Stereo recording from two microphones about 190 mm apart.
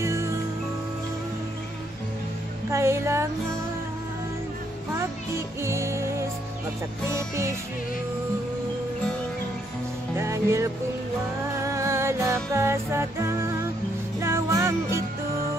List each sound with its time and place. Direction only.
0.0 s music: 15° right (ahead or behind)
2.7 s music: 15° right (ahead or behind)
5.6 s music: 15° right (ahead or behind)
10.1 s music: 15° right (ahead or behind)